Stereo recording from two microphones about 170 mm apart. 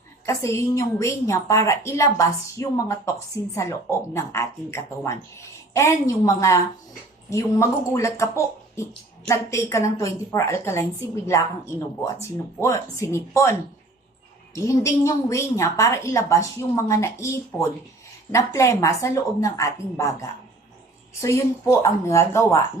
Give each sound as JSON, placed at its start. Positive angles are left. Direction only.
{"t": 0.3, "sound": "a woman's voice", "side_deg": 15}
{"t": 21.2, "sound": "a woman's voice", "side_deg": 15}